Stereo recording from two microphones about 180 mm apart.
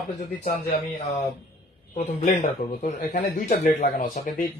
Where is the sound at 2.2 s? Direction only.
45° left (ahead or behind).